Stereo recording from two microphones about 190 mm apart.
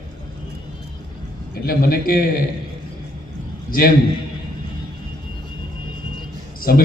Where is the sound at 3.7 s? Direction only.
50° left (ahead or behind).